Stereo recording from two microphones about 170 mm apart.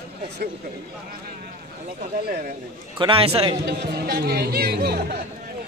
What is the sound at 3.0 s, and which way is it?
Speech, 35° right (ahead or behind).